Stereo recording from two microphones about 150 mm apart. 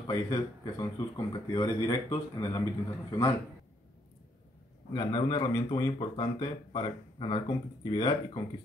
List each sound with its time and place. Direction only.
0.0 s speech: 25° left (ahead or behind)
4.9 s speech: 25° left (ahead or behind)